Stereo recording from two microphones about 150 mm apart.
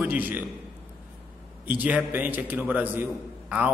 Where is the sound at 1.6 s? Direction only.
10° right (ahead or behind).